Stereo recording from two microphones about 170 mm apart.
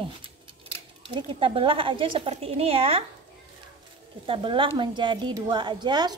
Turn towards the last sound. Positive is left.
turn(degrees=-25)  # may be behind; listen again after turning